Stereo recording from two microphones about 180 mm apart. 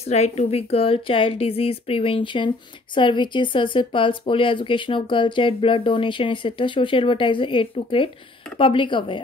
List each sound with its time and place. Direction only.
0.1 s a woman's voice: 35° left (ahead or behind)